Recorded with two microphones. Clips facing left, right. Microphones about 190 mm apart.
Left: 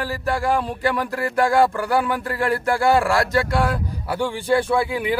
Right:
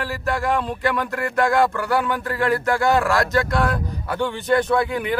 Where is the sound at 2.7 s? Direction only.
10° left (ahead or behind).